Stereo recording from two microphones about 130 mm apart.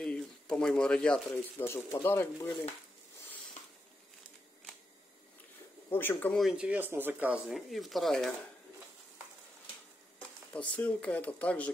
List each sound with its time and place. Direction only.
0.0 s a sound: 5° left (ahead or behind)
1.6 s speech: 20° left (ahead or behind)
5.9 s speech: 15° left (ahead or behind)
6.3 s speech: 5° right (ahead or behind)
10.5 s speech: 10° left (ahead or behind)